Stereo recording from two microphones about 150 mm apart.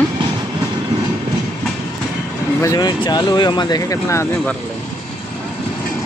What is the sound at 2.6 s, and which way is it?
Speech, 25° left (ahead or behind).